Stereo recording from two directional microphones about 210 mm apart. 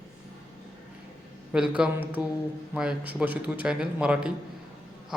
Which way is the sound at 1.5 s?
5° right (ahead or behind).